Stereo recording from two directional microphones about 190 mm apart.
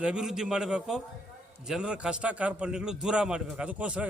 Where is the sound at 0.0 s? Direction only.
5° right (ahead or behind).